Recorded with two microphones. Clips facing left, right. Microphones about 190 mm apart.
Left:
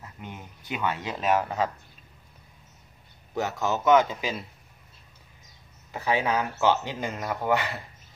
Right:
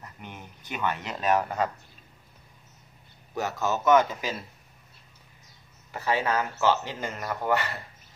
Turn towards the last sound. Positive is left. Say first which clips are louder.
# left 1 dB
turn(degrees=15)  # may be behind; listen again after turning